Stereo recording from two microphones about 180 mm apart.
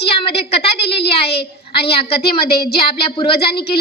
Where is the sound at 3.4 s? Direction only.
60° left (ahead or behind).